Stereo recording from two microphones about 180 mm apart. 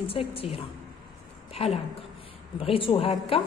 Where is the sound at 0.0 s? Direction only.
30° left (ahead or behind).